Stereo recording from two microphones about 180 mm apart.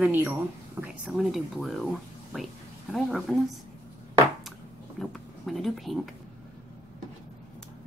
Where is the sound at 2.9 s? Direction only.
Centre (ahead or behind).